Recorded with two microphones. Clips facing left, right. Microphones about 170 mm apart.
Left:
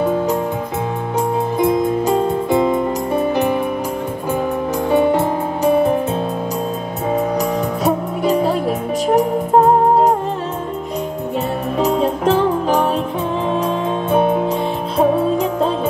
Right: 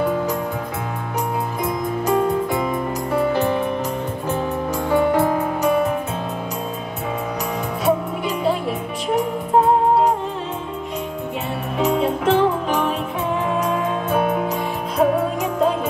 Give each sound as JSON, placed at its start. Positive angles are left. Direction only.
{"t": 1.6, "sound": "music", "side_deg": 25}
{"t": 4.9, "sound": "music", "side_deg": 25}
{"t": 7.3, "sound": "music", "side_deg": 40}
{"t": 11.8, "sound": "music", "side_deg": 40}